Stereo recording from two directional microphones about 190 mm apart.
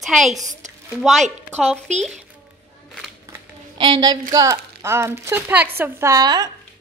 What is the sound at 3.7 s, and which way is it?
A woman's voice, 25° right (ahead or behind).